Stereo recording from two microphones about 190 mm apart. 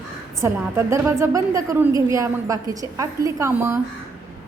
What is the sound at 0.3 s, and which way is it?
A woman's voice, 15° right (ahead or behind).